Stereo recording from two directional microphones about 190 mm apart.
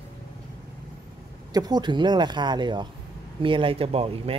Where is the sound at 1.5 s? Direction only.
20° right (ahead or behind).